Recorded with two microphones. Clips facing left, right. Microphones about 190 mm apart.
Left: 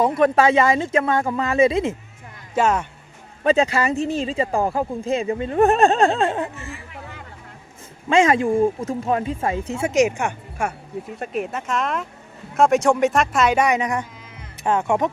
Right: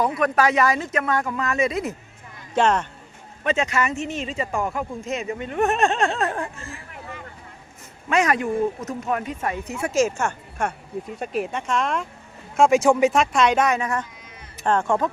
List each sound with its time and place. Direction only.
0.2 s speech: 25° left (ahead or behind)
2.6 s speech: 5° left (ahead or behind)
3.4 s speech: 35° left (ahead or behind)
8.1 s speech: 25° left (ahead or behind)
11.2 s speech: centre (ahead or behind)